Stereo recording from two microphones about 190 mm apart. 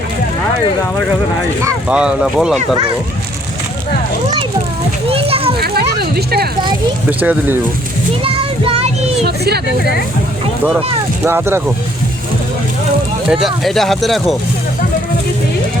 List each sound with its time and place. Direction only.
1.9 s speech: 5° right (ahead or behind)
2.7 s a child's voice: 30° right (ahead or behind)
5.0 s children playing: 30° right (ahead or behind)
5.5 s a child's voice: 55° right (ahead or behind)
7.1 s speech: 10° right (ahead or behind)
8.2 s child singing: 30° right (ahead or behind)
9.2 s speech: 60° right (ahead or behind)
11.2 s speech: 10° right (ahead or behind)
13.2 s speech: 5° right (ahead or behind)